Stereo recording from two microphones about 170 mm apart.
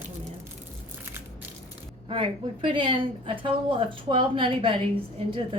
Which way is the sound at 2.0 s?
30° right (ahead or behind).